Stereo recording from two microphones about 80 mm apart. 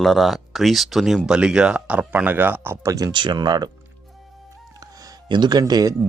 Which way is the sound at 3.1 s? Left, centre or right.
Right.